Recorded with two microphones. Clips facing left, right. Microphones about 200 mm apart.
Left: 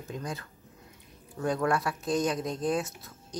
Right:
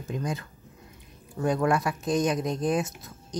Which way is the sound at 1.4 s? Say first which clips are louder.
Right 3 dB; 15° right (ahead or behind).